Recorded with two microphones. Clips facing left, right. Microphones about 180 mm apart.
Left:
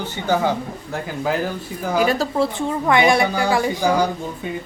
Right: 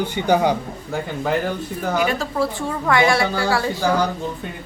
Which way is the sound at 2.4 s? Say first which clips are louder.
Left 2 dB; 20° left (ahead or behind).